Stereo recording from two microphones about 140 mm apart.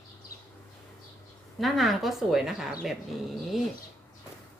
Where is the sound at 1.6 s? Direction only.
Centre (ahead or behind).